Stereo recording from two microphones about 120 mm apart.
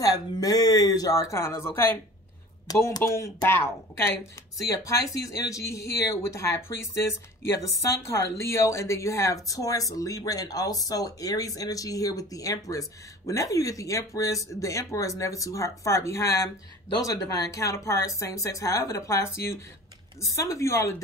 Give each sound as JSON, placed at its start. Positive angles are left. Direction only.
{"t": 0.0, "sound": "speech", "side_deg": 30}
{"t": 2.7, "sound": "speech", "side_deg": 30}
{"t": 7.9, "sound": "speech", "side_deg": 25}